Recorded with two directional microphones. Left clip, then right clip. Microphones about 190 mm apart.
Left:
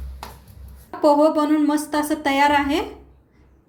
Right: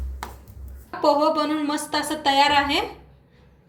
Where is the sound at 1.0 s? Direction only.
40° left (ahead or behind).